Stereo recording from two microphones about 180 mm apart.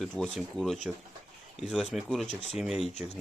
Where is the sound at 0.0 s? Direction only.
5° left (ahead or behind).